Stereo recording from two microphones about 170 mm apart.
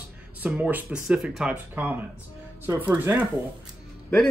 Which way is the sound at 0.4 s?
10° right (ahead or behind).